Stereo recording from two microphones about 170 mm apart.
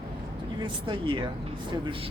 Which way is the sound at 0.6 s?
30° right (ahead or behind).